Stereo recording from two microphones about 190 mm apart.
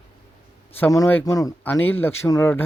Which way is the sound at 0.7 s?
15° left (ahead or behind).